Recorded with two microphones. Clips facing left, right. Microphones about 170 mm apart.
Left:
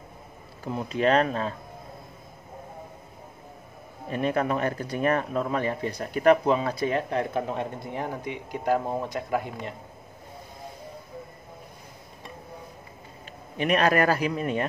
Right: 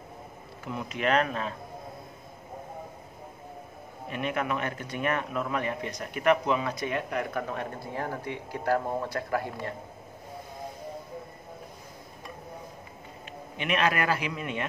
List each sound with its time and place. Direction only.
0.7 s speech: 35° left (ahead or behind)
4.1 s speech: 35° left (ahead or behind); by 9.8 s 20° left (ahead or behind)
13.6 s speech: 40° left (ahead or behind)